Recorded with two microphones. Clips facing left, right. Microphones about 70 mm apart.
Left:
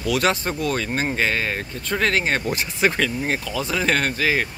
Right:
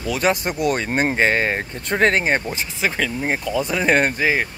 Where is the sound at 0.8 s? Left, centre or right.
Right.